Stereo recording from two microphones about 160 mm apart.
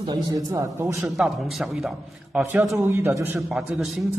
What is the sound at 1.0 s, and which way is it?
A man's voice, centre (ahead or behind).